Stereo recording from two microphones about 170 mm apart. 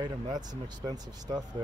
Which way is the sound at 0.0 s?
25° right (ahead or behind).